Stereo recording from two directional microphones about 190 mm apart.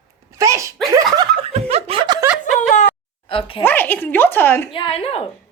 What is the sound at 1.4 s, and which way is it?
Laughter, 35° right (ahead or behind).